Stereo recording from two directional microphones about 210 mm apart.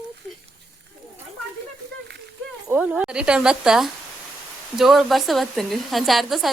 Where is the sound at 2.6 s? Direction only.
10° right (ahead or behind).